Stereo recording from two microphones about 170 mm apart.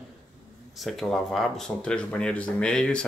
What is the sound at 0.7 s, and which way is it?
Speech, centre (ahead or behind).